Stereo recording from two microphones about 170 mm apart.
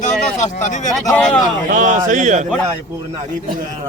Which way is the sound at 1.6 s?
50° right (ahead or behind).